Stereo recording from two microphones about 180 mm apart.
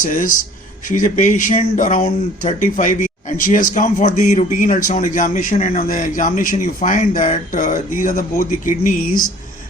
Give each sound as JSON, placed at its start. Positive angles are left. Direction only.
{"t": 0.0, "sound": "a man's voice", "side_deg": 45}